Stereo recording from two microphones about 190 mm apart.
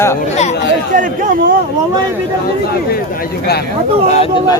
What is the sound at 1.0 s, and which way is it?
Speech, 45° right (ahead or behind).